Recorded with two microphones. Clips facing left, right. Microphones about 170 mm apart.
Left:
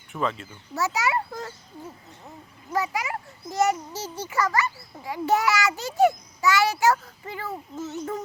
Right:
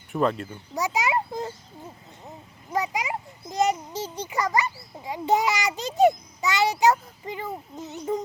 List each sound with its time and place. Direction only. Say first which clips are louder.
0.2 s speech: right 4 dB; 45° right (ahead or behind)
0.7 s a child's voice: even; 15° right (ahead or behind)
2.7 s a child's voice: even; 20° right (ahead or behind)